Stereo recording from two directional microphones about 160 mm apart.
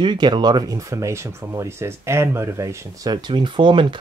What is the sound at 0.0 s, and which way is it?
Speech, 25° right (ahead or behind).